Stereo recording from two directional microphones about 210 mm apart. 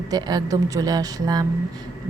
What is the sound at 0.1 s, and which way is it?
A woman's voice, 20° right (ahead or behind).